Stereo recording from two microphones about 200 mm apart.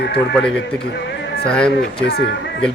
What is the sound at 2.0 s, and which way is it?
Speech, 55° left (ahead or behind).